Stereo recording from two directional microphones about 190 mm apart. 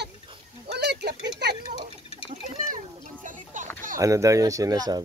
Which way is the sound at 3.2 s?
45° right (ahead or behind).